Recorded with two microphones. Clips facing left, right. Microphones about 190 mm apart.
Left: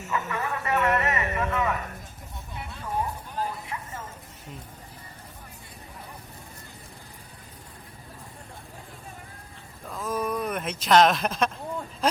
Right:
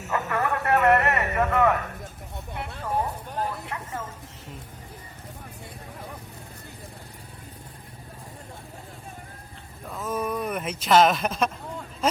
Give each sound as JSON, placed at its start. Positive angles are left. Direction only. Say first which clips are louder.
{"t": 0.1, "sound": "a man's voice", "louder": "right 4 dB", "side_deg": -60}
{"t": 2.3, "sound": "vehicle", "louder": "right 4 dB", "side_deg": -60}
{"t": 3.3, "sound": "a sound", "louder": "right 1 dB", "side_deg": -60}
{"t": 9.9, "sound": "speech", "louder": "even", "side_deg": -5}